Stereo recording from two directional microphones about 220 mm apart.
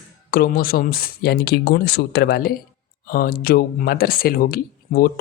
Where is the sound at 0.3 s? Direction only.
40° left (ahead or behind).